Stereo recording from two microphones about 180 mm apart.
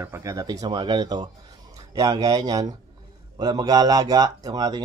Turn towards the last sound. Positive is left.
turn(degrees=-20)  # may be behind; listen again after turning